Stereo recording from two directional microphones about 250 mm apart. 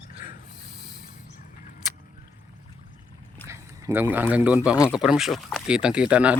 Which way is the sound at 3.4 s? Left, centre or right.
Centre.